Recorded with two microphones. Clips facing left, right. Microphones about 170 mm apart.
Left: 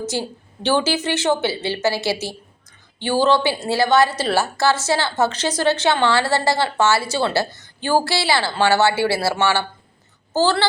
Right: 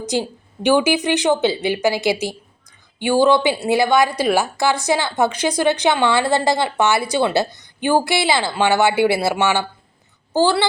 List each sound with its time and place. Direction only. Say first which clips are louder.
0.0 s a woman's voice: right 3 dB; 15° right (ahead or behind)